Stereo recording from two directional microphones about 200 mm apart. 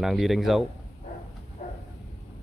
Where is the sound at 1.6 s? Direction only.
45° left (ahead or behind).